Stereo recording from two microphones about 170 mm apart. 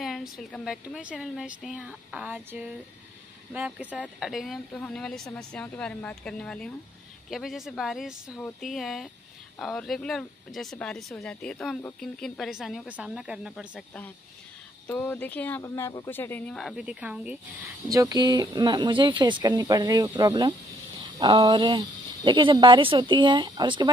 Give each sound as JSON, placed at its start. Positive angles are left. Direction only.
{"t": 0.0, "sound": "speech", "side_deg": 0}
{"t": 14.9, "sound": "speech", "side_deg": 10}
{"t": 16.1, "sound": "speech", "side_deg": 10}
{"t": 17.8, "sound": "speech", "side_deg": -20}